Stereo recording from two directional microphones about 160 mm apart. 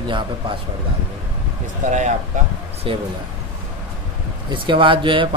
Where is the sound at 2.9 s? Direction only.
35° right (ahead or behind).